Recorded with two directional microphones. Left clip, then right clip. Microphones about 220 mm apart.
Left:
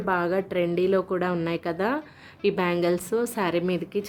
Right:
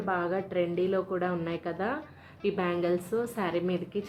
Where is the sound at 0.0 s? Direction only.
55° left (ahead or behind).